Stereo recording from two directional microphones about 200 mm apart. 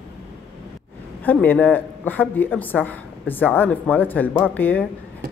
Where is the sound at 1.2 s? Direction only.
10° left (ahead or behind).